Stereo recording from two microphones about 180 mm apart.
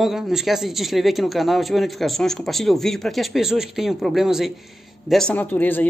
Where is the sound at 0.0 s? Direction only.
Centre (ahead or behind).